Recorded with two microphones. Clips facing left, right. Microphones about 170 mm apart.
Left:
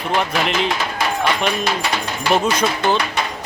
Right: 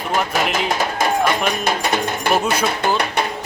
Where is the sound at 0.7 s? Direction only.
45° right (ahead or behind).